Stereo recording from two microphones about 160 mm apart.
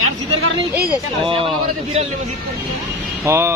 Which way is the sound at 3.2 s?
15° right (ahead or behind).